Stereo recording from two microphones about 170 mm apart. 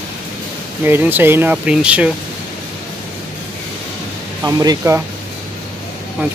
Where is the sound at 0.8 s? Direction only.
10° right (ahead or behind).